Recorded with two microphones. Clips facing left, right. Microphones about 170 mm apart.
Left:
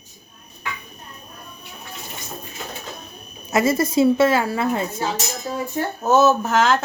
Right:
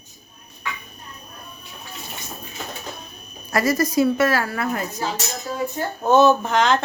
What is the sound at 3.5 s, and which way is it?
A woman's voice, 25° left (ahead or behind).